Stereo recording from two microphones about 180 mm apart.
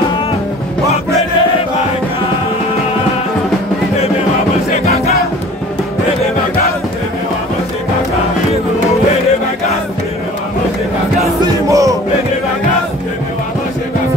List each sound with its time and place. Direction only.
4.8 s music: 35° left (ahead or behind)
11.7 s music: 20° right (ahead or behind)